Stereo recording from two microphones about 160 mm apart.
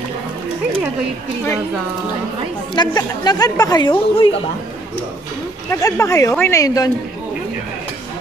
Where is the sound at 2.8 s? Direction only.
25° left (ahead or behind).